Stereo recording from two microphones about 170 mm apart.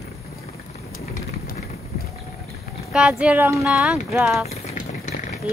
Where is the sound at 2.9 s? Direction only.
5° right (ahead or behind).